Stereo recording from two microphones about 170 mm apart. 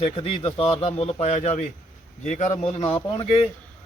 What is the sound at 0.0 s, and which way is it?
A man's voice, 35° left (ahead or behind).